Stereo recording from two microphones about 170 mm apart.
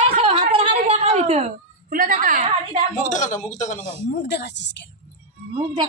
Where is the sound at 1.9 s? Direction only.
50° right (ahead or behind).